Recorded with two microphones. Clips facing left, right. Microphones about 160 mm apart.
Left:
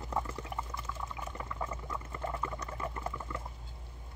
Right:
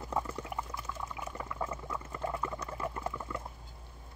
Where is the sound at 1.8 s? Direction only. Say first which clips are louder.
Right 2 dB; 10° right (ahead or behind).